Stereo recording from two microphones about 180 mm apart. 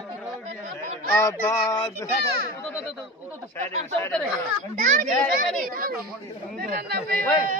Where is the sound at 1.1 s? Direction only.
15° left (ahead or behind).